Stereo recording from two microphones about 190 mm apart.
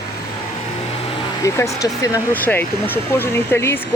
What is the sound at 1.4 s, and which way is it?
Speech, 15° left (ahead or behind).